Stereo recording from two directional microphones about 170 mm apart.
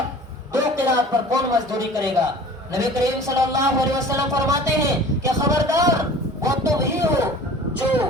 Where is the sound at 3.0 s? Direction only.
20° right (ahead or behind).